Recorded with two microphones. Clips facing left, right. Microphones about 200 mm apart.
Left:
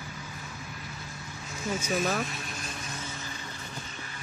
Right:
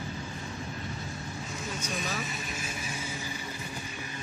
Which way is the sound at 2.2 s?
Centre (ahead or behind).